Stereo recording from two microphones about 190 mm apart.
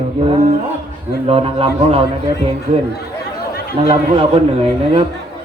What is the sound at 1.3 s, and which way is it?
A man's voice, 30° right (ahead or behind).